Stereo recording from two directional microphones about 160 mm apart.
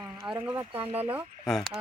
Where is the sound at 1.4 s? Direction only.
Centre (ahead or behind).